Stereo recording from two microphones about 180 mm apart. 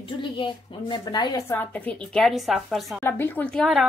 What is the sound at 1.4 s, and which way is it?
Speech, 10° left (ahead or behind).